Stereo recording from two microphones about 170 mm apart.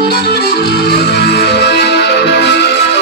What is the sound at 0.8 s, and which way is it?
Music, 75° left (ahead or behind).